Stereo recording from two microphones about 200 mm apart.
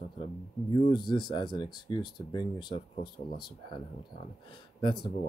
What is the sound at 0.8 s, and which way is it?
Speech, 25° left (ahead or behind).